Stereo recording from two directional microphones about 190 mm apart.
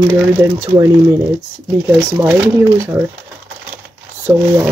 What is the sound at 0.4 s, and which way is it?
Speech, 15° right (ahead or behind).